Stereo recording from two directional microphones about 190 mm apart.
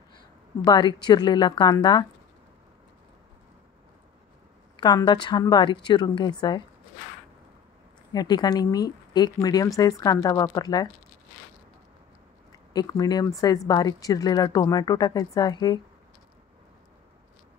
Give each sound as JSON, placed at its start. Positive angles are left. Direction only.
{"t": 0.7, "sound": "speech", "side_deg": 20}
{"t": 4.7, "sound": "speech", "side_deg": 20}
{"t": 8.1, "sound": "speech", "side_deg": 20}
{"t": 12.7, "sound": "speech", "side_deg": 20}